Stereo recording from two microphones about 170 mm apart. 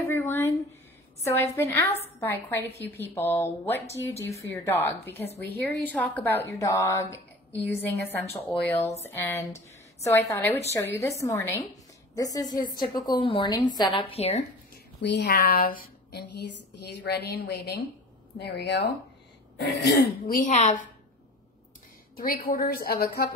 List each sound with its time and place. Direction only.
0.0 s a sound: 15° left (ahead or behind)
1.2 s a woman's voice: 15° left (ahead or behind); by 14.4 s 40° left (ahead or behind)
15.0 s speech: 80° left
15.3 s a woman's voice: 60° left (ahead or behind); by 18.9 s 80° left
19.5 s throat clearing: 90° left
20.0 s a woman's voice: 55° left (ahead or behind)
22.1 s a woman's voice: 60° left (ahead or behind)